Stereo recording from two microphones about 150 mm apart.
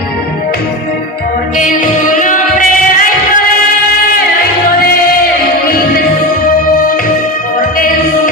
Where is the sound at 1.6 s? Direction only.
60° left (ahead or behind).